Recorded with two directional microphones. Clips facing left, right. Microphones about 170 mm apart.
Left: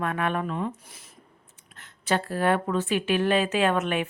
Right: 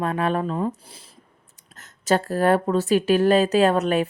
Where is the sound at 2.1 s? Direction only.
40° right (ahead or behind).